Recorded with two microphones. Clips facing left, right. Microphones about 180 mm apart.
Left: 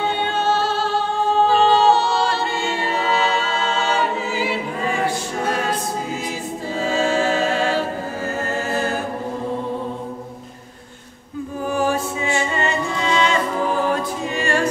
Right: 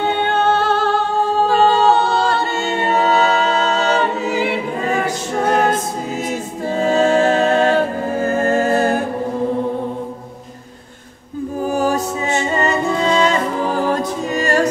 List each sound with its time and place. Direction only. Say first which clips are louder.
0.3 s music: right 5 dB; 55° right (ahead or behind)
1.5 s a capella: right 2 dB; 50° right (ahead or behind)
5.0 s a capella: right 3 dB; 50° right (ahead or behind)
6.7 s music: right 6 dB; 50° right (ahead or behind)
11.7 s music: right 2 dB; 40° right (ahead or behind)